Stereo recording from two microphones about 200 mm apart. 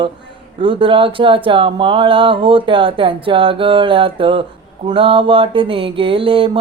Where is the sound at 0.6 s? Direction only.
25° right (ahead or behind).